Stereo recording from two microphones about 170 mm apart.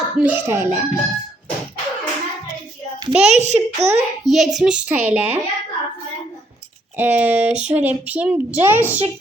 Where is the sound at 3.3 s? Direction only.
40° right (ahead or behind).